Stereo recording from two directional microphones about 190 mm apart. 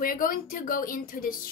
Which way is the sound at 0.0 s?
50° left (ahead or behind).